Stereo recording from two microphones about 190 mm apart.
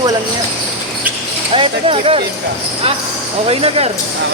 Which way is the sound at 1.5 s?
30° right (ahead or behind).